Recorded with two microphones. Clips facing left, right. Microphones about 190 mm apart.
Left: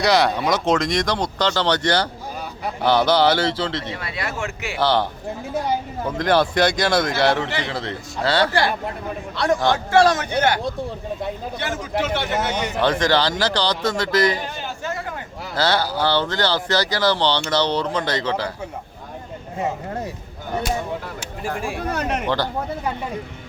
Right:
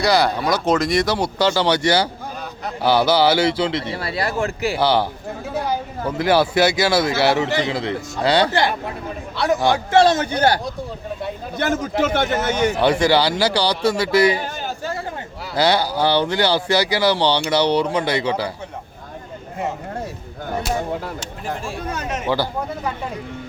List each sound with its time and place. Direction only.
0.0 s speech: centre (ahead or behind)
3.9 s speech: 35° right (ahead or behind)
4.8 s speech: 10° right (ahead or behind)
6.1 s speech: 10° right (ahead or behind)
9.4 s speech: 5° right (ahead or behind)
9.9 s a man's voice: 25° right (ahead or behind)
11.5 s a man's voice: 45° right (ahead or behind)
12.8 s speech: 10° right (ahead or behind)
15.5 s speech: 15° right (ahead or behind)
21.2 s speech: 10° left (ahead or behind)
21.8 s speech: 60° left (ahead or behind)